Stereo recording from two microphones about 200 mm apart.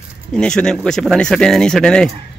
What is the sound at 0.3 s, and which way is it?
Speech, 5° left (ahead or behind).